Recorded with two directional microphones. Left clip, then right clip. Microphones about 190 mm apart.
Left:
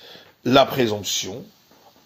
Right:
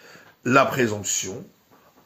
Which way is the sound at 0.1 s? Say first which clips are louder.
Left 2 dB; 35° left (ahead or behind).